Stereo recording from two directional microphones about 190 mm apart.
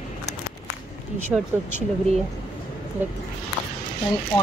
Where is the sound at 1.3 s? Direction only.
10° right (ahead or behind).